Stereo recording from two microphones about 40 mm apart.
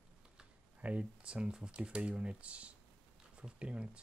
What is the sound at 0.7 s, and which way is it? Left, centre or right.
Speech, right.